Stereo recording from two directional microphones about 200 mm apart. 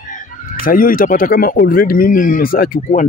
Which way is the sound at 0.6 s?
45° left (ahead or behind).